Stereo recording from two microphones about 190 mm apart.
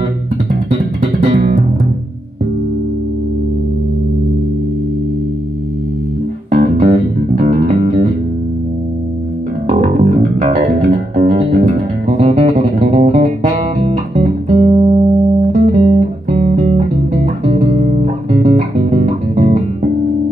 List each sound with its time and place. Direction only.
0.7 s music: 40° right (ahead or behind)
6.5 s music: 40° right (ahead or behind)
9.7 s music: 40° right (ahead or behind)
15.5 s music: 45° right (ahead or behind)
18.8 s music: 35° right (ahead or behind)